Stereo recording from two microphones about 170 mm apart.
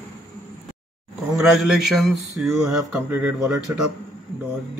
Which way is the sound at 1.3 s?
Centre (ahead or behind).